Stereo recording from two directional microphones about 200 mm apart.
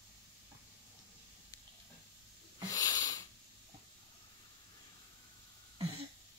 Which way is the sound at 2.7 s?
15° left (ahead or behind).